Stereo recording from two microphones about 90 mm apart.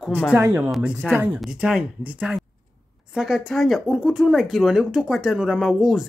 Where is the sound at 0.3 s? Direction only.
20° right (ahead or behind).